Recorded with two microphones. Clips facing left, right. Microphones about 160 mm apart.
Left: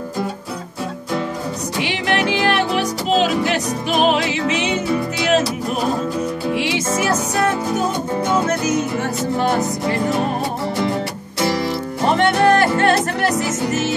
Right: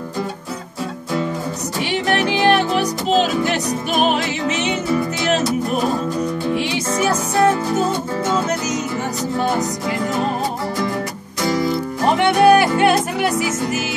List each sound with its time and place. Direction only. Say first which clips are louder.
2.0 s music: right 2 dB; 45° right (ahead or behind)
12.2 s music: right 2 dB; 10° right (ahead or behind)